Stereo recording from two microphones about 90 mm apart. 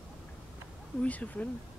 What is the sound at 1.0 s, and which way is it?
Speech, 15° left (ahead or behind).